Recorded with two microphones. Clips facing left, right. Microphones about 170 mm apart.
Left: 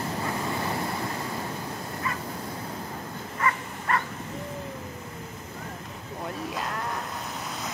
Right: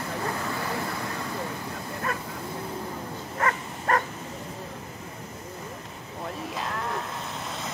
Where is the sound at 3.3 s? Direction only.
50° right (ahead or behind).